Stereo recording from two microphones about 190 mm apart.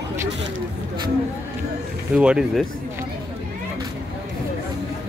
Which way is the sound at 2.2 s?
5° right (ahead or behind).